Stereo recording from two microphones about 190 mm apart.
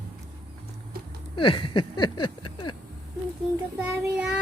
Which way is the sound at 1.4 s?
25° left (ahead or behind).